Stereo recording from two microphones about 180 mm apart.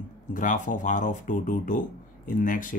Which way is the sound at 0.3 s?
50° left (ahead or behind).